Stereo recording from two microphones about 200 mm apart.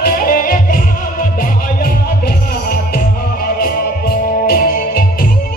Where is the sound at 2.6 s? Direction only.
50° left (ahead or behind).